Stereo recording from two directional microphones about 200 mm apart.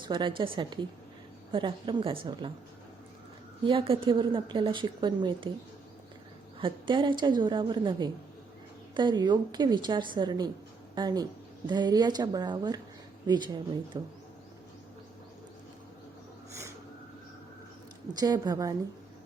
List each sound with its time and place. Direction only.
0.0 s a woman's voice: 25° right (ahead or behind)
3.6 s a woman's voice: 25° right (ahead or behind)
6.6 s a woman's voice: 25° right (ahead or behind)
16.5 s a sound: 15° right (ahead or behind)
18.1 s a woman's voice: 20° right (ahead or behind)